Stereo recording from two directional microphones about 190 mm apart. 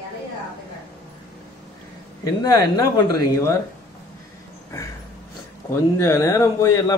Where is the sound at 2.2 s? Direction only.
20° left (ahead or behind).